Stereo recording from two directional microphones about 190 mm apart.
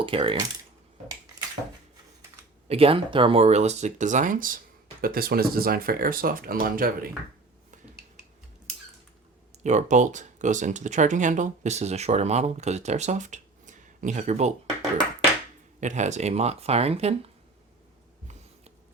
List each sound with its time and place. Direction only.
0.0 s speech: 30° right (ahead or behind)
2.6 s speech: 30° right (ahead or behind); by 7.1 s 50° right (ahead or behind)
9.6 s speech: 40° right (ahead or behind)
15.8 s speech: 40° right (ahead or behind)